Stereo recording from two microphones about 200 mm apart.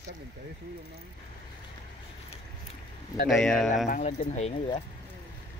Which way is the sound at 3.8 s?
40° left (ahead or behind).